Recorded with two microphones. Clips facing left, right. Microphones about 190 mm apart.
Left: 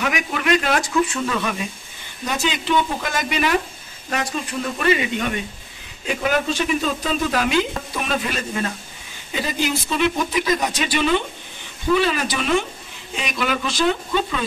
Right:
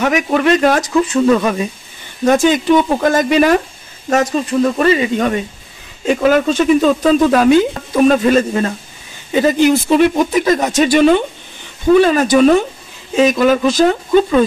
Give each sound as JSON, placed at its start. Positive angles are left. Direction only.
{"t": 0.0, "sound": "speech", "side_deg": -40}